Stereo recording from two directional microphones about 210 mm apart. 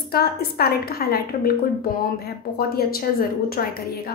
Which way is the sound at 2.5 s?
45° left (ahead or behind).